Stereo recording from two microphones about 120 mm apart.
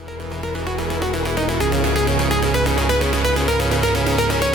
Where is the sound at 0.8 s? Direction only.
Centre (ahead or behind).